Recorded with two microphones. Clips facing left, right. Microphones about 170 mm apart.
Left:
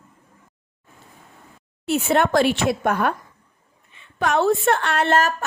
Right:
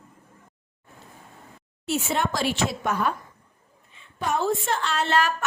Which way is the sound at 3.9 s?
75° left (ahead or behind).